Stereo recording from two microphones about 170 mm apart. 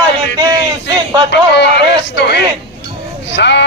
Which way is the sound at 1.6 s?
90° left.